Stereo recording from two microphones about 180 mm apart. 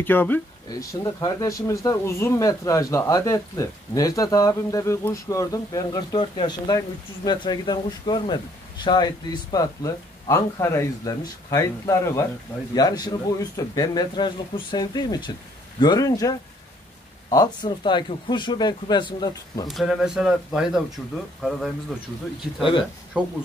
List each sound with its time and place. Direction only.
0.0 s speech: 10° left (ahead or behind)
19.7 s speech: centre (ahead or behind)
22.6 s speech: 30° left (ahead or behind)
23.2 s speech: 5° right (ahead or behind)